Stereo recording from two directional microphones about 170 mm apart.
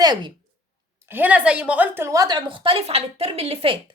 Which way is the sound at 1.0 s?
10° right (ahead or behind).